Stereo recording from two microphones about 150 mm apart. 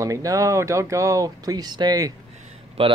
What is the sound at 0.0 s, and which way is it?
Speech, 20° right (ahead or behind).